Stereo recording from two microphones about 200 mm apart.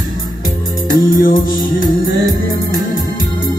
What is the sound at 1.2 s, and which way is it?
Music, 45° left (ahead or behind).